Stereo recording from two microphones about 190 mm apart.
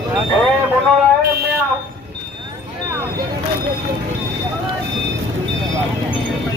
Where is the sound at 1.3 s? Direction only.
55° right (ahead or behind).